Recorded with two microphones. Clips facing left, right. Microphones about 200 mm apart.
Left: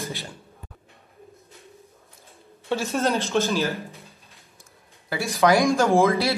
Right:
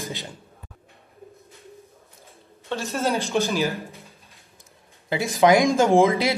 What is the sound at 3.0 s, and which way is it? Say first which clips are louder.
Speech: right 1 dB; 15° right (ahead or behind).